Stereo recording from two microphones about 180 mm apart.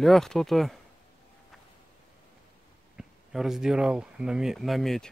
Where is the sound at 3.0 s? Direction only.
Centre (ahead or behind).